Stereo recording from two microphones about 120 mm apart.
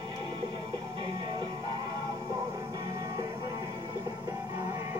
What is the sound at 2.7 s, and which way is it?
Music, 30° right (ahead or behind).